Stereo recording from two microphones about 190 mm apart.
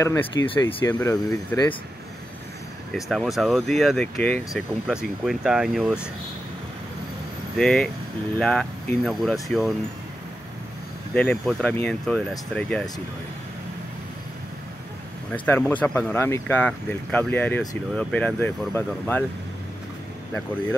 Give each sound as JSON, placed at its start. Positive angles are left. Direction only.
{"t": 0.0, "sound": "speech", "side_deg": 15}
{"t": 2.9, "sound": "speech", "side_deg": 0}
{"t": 7.5, "sound": "speech", "side_deg": 0}
{"t": 11.1, "sound": "speech", "side_deg": 5}
{"t": 15.3, "sound": "speech", "side_deg": 10}